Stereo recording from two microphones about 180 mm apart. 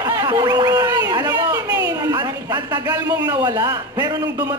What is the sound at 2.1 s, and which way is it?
A man's voice, 20° right (ahead or behind).